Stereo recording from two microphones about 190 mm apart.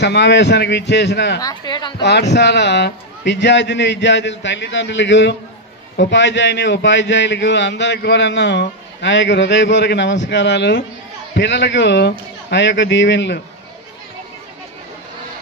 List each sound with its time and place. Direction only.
0.0 s a man's voice: 65° left (ahead or behind)
1.4 s speech: 20° left (ahead or behind)
2.0 s a man's voice: 65° left (ahead or behind)